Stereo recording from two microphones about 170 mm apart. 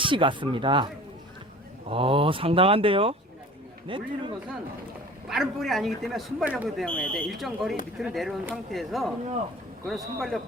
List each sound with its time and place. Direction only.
0.0 s speech: 30° right (ahead or behind)
1.9 s speech: 30° right (ahead or behind)
5.3 s speech: centre (ahead or behind)
6.8 s speech: 5° left (ahead or behind)
10.2 s speech: centre (ahead or behind)